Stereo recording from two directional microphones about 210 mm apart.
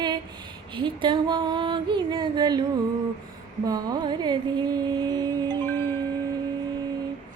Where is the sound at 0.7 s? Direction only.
25° right (ahead or behind).